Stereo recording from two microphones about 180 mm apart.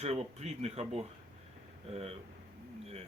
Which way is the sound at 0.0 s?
35° right (ahead or behind).